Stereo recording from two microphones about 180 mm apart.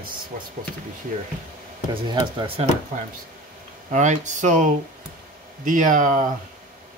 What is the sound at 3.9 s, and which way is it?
Speech, 40° right (ahead or behind).